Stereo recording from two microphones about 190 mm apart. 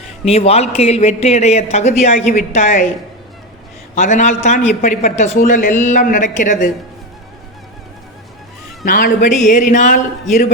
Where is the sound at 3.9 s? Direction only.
40° left (ahead or behind).